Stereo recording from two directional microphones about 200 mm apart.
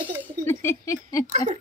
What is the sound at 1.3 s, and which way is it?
Speech, 35° right (ahead or behind).